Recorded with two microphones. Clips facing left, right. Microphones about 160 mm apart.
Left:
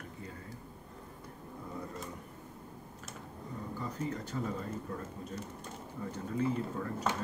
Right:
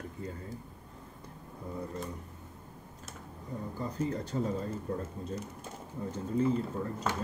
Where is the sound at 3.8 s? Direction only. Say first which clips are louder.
Right 5 dB; 35° right (ahead or behind).